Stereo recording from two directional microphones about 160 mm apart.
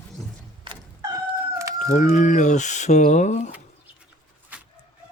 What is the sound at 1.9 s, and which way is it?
Speech, 50° left (ahead or behind).